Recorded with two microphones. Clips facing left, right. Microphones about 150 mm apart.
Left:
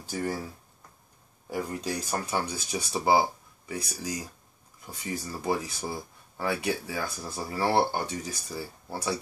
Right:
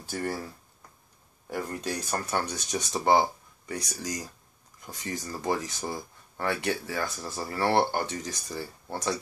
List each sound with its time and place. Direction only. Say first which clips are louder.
0.1 s speech: left 1 dB; 10° left (ahead or behind)
1.5 s speech: left 1 dB; 10° left (ahead or behind)